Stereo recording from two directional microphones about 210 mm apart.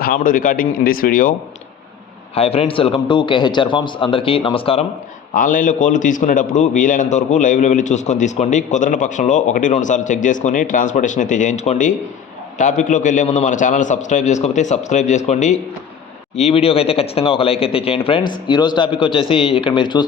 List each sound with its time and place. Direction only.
0.0 s a man's voice: 40° left (ahead or behind)
2.3 s speech: 30° left (ahead or behind)
5.3 s a man's voice: 40° left (ahead or behind); by 20.1 s 20° left (ahead or behind)